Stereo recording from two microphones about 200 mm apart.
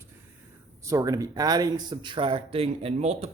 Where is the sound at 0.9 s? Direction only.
15° right (ahead or behind).